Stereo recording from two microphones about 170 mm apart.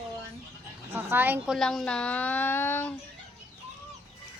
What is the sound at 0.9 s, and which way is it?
Speech, 10° right (ahead or behind).